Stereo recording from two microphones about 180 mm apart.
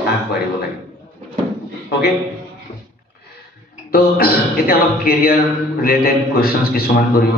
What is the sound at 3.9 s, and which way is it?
A man's voice, 55° left (ahead or behind).